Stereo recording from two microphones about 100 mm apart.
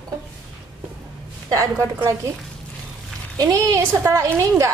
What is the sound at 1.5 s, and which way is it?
Speech, 30° right (ahead or behind).